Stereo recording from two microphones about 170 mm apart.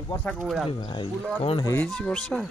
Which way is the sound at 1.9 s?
5° left (ahead or behind).